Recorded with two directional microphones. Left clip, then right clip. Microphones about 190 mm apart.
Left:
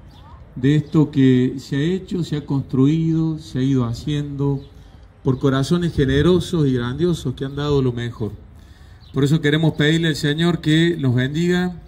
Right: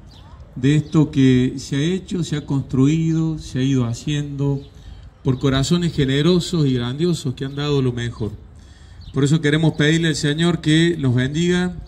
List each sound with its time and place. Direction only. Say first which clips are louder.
0.7 s a man's voice: even; 5° right (ahead or behind)